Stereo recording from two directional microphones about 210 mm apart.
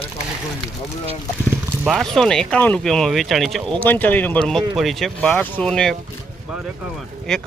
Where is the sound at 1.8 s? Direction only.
Centre (ahead or behind).